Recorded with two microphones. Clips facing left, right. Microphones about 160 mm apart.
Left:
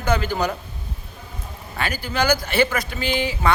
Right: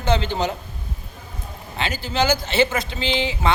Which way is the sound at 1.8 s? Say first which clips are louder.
Right 1 dB; 20° right (ahead or behind).